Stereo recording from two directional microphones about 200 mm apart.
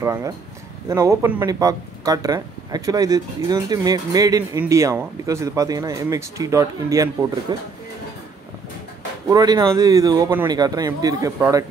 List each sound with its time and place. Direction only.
0.0 s speech: 15° right (ahead or behind)
9.3 s speech: 20° right (ahead or behind)